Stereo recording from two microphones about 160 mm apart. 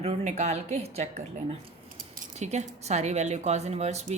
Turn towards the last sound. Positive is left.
turn(degrees=-45)  # may be behind; listen again after turning